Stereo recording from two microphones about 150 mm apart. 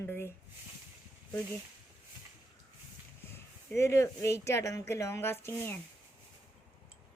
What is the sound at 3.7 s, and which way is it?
Speech, 20° left (ahead or behind).